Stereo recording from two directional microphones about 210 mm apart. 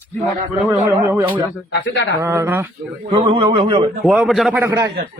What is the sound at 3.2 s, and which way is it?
Speech, 25° right (ahead or behind).